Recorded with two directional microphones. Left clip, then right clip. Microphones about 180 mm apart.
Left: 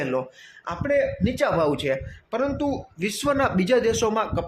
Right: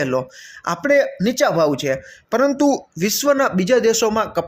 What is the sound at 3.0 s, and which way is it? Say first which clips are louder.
Speech: right 4 dB; 25° right (ahead or behind).